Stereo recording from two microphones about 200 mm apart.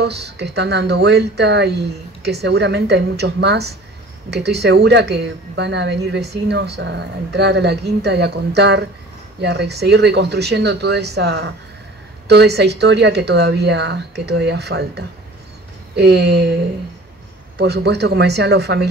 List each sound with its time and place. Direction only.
0.0 s speech: 55° right (ahead or behind)
17.6 s speech: 55° right (ahead or behind)